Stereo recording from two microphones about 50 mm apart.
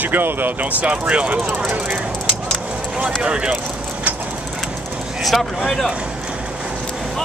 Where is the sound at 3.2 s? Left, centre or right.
Right.